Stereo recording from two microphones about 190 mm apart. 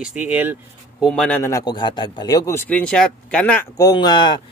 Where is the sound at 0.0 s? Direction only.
5° right (ahead or behind).